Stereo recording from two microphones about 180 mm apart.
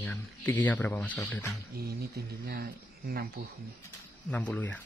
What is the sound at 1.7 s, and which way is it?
Speech, 60° right (ahead or behind).